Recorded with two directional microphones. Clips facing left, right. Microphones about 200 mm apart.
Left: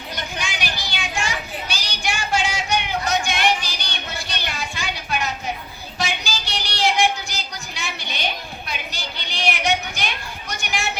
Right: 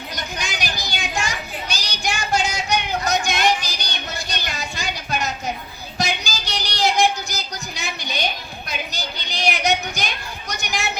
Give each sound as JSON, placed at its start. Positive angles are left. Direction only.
{"t": 0.3, "sound": "child singing", "side_deg": -40}
{"t": 6.0, "sound": "a sound", "side_deg": -40}
{"t": 10.6, "sound": "children playing", "side_deg": -40}